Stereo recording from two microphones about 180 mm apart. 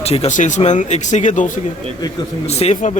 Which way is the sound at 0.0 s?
35° left (ahead or behind).